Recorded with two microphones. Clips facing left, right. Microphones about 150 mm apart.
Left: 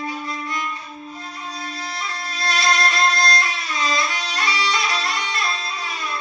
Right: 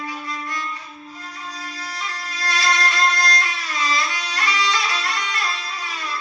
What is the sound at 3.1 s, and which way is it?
Music, 30° left (ahead or behind).